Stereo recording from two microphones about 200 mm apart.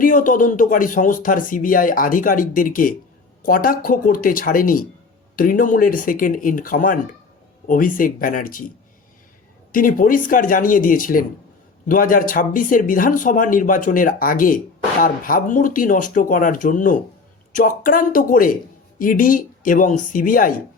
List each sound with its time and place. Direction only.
0.0 s speech: 40° left (ahead or behind)
9.7 s speech: 45° left (ahead or behind)